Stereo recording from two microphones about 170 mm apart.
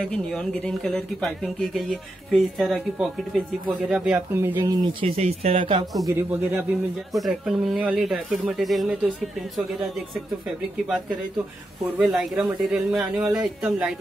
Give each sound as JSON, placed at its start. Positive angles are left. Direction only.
{"t": 0.0, "sound": "speech", "side_deg": 0}
{"t": 4.6, "sound": "speech", "side_deg": -25}
{"t": 5.0, "sound": "speech", "side_deg": -35}
{"t": 6.0, "sound": "a man's voice", "side_deg": -15}
{"t": 7.1, "sound": "speech", "side_deg": 0}